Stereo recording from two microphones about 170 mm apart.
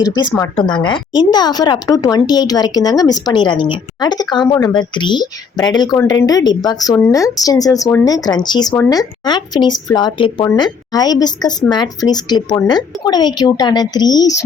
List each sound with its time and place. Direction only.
0.0 s a woman's voice: 25° left (ahead or behind)